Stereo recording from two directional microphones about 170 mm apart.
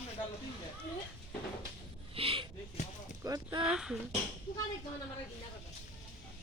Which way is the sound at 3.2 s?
20° right (ahead or behind).